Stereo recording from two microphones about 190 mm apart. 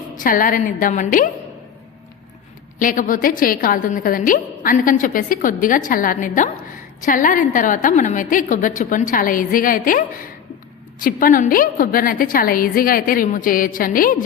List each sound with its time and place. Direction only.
0.2 s a woman's voice: 45° left (ahead or behind)
2.7 s a woman's voice: 45° left (ahead or behind)